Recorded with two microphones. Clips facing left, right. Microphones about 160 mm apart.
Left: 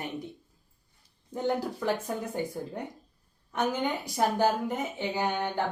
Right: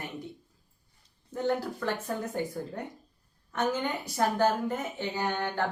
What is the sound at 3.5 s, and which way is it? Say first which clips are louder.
A woman's voice: left 1 dB; 15° left (ahead or behind).